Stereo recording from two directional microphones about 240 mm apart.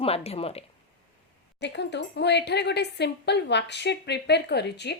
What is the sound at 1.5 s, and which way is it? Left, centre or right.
A woman's voice, left.